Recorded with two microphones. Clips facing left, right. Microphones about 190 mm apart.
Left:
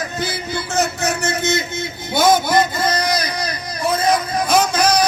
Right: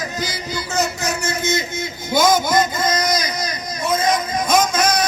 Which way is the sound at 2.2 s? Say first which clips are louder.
Left 2 dB; 30° left (ahead or behind).